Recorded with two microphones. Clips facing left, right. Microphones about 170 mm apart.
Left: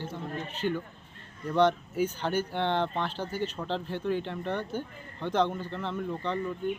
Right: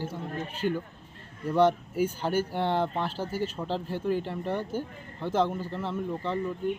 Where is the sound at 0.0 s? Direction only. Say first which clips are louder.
Right 2 dB; 10° right (ahead or behind).